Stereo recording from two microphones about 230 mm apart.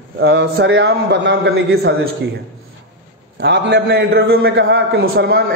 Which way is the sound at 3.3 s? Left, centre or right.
Right.